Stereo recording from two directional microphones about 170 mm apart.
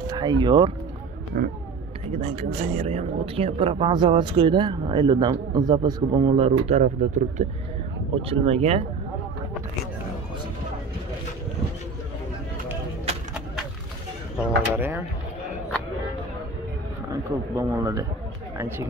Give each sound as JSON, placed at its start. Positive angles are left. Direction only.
{"t": 0.0, "sound": "speech", "side_deg": -25}
{"t": 1.3, "sound": "a sound", "side_deg": -60}
{"t": 2.0, "sound": "speech", "side_deg": -35}
{"t": 14.7, "sound": "speech", "side_deg": -10}
{"t": 17.1, "sound": "speech", "side_deg": -15}